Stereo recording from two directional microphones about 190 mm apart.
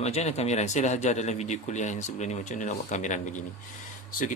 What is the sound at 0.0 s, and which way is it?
Speech, 35° left (ahead or behind).